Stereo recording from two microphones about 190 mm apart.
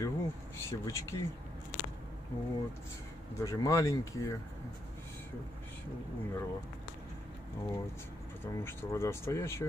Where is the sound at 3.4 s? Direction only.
15° left (ahead or behind).